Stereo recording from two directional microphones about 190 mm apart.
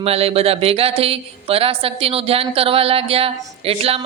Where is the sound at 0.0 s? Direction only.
30° right (ahead or behind).